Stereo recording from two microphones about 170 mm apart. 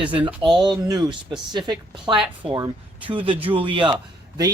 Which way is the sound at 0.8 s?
20° right (ahead or behind).